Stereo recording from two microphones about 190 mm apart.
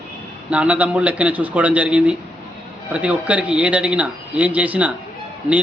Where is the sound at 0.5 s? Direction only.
5° right (ahead or behind).